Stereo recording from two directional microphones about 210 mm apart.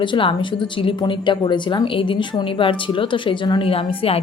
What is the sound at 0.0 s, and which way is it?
A woman's voice, 25° left (ahead or behind).